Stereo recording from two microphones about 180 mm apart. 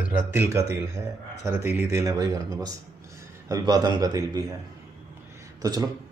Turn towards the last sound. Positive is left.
turn(degrees=-20)  # may be behind; listen again after turning